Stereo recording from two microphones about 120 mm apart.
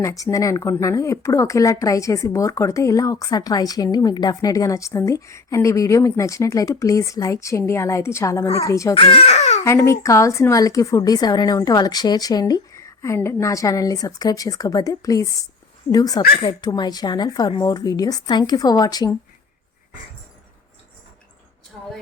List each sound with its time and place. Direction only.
0.0 s speech: 30° left (ahead or behind)
9.0 s speech: 55° left (ahead or behind)
9.6 s speech: 25° left (ahead or behind)